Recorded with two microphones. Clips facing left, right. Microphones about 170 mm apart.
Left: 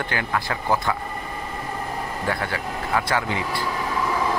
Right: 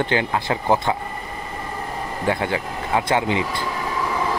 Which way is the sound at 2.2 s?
20° right (ahead or behind).